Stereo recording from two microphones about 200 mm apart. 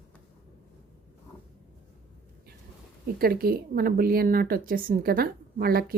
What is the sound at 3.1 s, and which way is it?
Speech, 50° right (ahead or behind).